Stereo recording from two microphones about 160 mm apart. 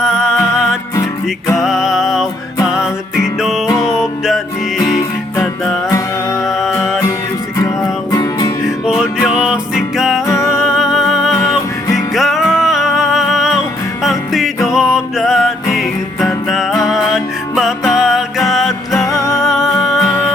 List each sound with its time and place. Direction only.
0.0 s music: 5° right (ahead or behind)
3.8 s music: 5° right (ahead or behind)
8.1 s music: 25° left (ahead or behind)
8.6 s music: 5° right (ahead or behind)
10.2 s music: 15° left (ahead or behind)
10.5 s music: 5° right (ahead or behind)
18.9 s music: 20° left (ahead or behind)
19.4 s music: centre (ahead or behind)